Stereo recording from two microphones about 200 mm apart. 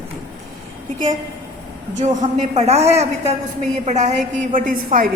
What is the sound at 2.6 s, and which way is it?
A woman's voice, 30° right (ahead or behind).